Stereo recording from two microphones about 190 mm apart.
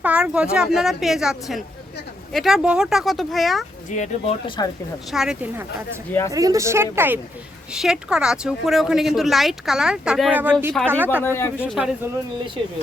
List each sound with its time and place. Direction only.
0.0 s speech: 5° right (ahead or behind)
3.8 s speech: 40° left (ahead or behind)
4.4 s speech: 25° left (ahead or behind)
5.1 s speech: 5° right (ahead or behind)
6.1 s speech: 10° left (ahead or behind)
6.3 s speech: 20° right (ahead or behind)
11.2 s speech: 10° left (ahead or behind)
11.5 s speech: 5° right (ahead or behind)